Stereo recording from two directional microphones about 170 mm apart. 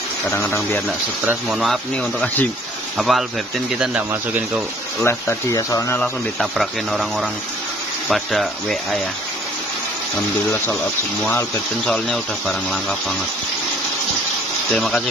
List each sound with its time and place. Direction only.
0.3 s speech: 15° left (ahead or behind)
1.2 s speech: centre (ahead or behind)
5.0 s speech: 20° left (ahead or behind)
6.4 s speech: centre (ahead or behind)
11.2 s speech: 10° left (ahead or behind)
14.7 s speech: 5° left (ahead or behind)